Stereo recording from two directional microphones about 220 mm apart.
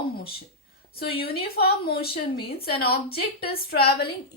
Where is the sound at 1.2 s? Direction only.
45° left (ahead or behind).